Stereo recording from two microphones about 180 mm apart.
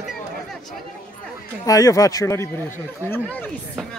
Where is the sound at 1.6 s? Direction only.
20° left (ahead or behind).